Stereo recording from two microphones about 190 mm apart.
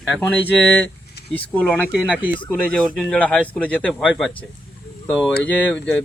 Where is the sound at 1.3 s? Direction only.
10° left (ahead or behind).